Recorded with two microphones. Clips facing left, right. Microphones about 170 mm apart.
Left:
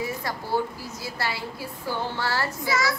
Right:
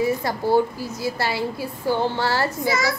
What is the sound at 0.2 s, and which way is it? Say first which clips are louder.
A woman's voice: right 8 dB; 30° right (ahead or behind).